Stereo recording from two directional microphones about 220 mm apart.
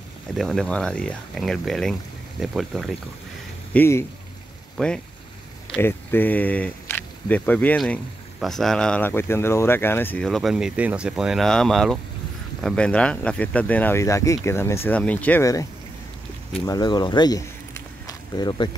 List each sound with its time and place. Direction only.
0.4 s speech: centre (ahead or behind)
3.7 s speech: 10° left (ahead or behind)